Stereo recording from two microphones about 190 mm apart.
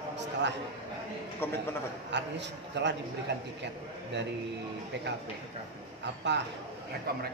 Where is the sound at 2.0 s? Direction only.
65° right (ahead or behind).